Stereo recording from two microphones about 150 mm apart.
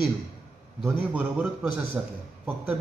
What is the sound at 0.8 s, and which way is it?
A man's voice, 10° right (ahead or behind).